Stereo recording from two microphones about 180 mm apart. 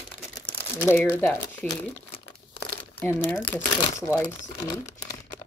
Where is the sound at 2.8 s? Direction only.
10° left (ahead or behind).